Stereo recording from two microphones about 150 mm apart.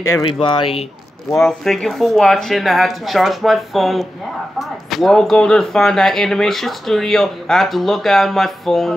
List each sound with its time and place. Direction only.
0.3 s speech: 30° left (ahead or behind)
1.4 s speech: centre (ahead or behind)